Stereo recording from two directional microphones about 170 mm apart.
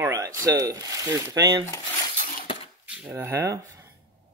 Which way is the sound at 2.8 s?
5° right (ahead or behind).